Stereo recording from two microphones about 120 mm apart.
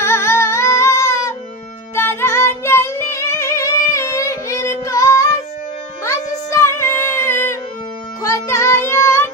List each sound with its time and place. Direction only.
0.0 s music: 20° left (ahead or behind)